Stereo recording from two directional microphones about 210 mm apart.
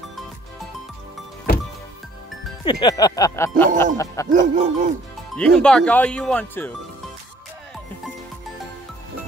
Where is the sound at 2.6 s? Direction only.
20° left (ahead or behind).